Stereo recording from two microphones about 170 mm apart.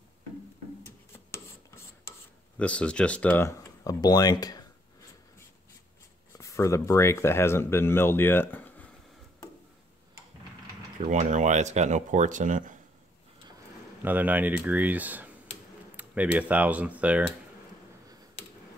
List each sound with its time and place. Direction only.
1.1 s filing: 15° left (ahead or behind)
2.6 s speech: 5° left (ahead or behind); by 4.6 s 20° left (ahead or behind)
6.3 s speech: 20° left (ahead or behind)
11.0 s speech: 45° right (ahead or behind)
14.0 s speech: 10° right (ahead or behind)